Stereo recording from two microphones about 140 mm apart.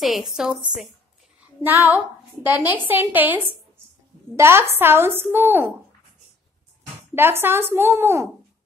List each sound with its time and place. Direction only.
0.0 s a woman's voice: centre (ahead or behind)
7.2 s a woman's voice: 15° right (ahead or behind)